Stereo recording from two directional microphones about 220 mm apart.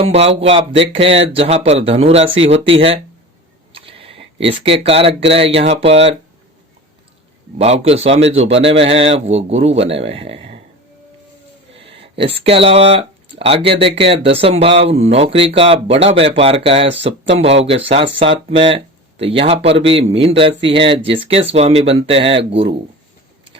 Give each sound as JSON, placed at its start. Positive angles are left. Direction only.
{"t": 0.0, "sound": "speech", "side_deg": -25}
{"t": 3.7, "sound": "a sound", "side_deg": -25}
{"t": 5.3, "sound": "speech", "side_deg": -25}
{"t": 7.6, "sound": "speech", "side_deg": -30}
{"t": 11.8, "sound": "speech", "side_deg": -25}